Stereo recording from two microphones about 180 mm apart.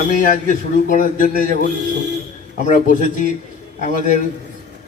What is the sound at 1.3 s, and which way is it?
Music, 55° right (ahead or behind).